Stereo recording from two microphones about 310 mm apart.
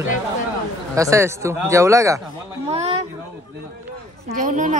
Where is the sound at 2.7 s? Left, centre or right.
Right.